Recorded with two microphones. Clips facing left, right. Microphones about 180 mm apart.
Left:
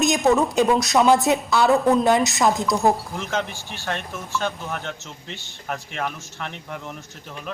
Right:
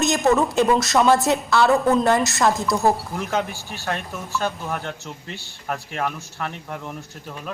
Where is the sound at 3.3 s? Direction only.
40° right (ahead or behind).